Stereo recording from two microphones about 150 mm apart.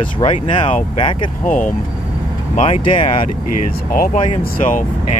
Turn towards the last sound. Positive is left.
turn(degrees=60)  # may be behind; listen again after turning